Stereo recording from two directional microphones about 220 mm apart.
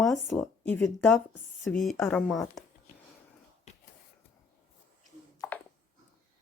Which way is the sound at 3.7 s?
30° left (ahead or behind).